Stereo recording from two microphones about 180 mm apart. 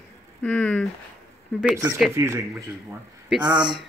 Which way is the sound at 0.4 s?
5° left (ahead or behind).